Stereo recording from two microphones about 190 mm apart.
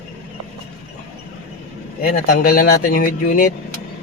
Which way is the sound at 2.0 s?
50° left (ahead or behind).